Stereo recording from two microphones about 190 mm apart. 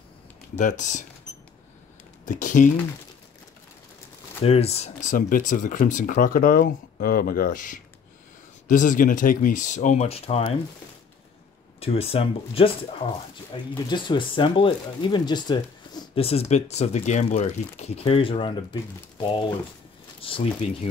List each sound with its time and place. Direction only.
0.6 s speech: 40° left (ahead or behind)
2.2 s speech: 40° left (ahead or behind)
4.5 s speech: 35° left (ahead or behind)
11.8 s speech: 30° left (ahead or behind)